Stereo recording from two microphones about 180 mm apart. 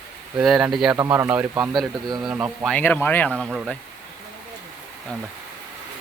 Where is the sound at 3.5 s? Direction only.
5° right (ahead or behind).